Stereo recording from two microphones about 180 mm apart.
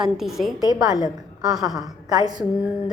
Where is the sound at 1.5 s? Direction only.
Centre (ahead or behind).